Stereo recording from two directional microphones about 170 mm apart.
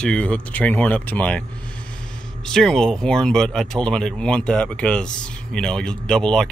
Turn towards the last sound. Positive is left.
turn(degrees=5)  # may be behind; listen again after turning